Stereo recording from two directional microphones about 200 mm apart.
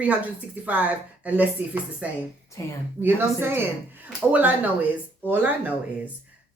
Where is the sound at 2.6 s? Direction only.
15° left (ahead or behind).